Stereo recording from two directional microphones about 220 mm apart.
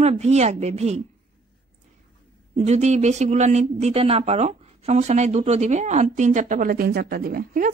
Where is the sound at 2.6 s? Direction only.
30° right (ahead or behind).